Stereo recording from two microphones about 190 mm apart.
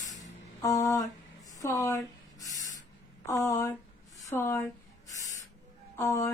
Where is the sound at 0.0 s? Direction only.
20° left (ahead or behind).